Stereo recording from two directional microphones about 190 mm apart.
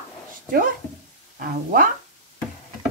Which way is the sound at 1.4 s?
50° right (ahead or behind).